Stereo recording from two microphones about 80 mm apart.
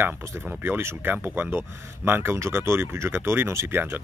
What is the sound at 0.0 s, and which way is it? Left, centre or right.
Speech, right.